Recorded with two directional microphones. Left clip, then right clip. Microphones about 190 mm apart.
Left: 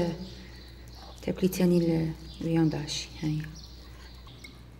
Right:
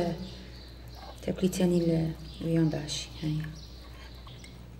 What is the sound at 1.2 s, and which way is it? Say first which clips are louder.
Speech: left 1 dB; 35° left (ahead or behind).